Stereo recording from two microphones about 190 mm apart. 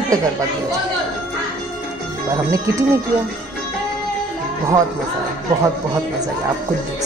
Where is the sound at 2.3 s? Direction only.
15° right (ahead or behind).